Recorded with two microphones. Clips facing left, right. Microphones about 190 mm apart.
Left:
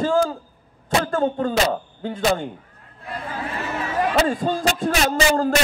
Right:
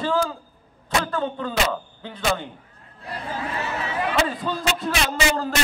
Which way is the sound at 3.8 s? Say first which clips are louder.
Left 5 dB; 45° left (ahead or behind).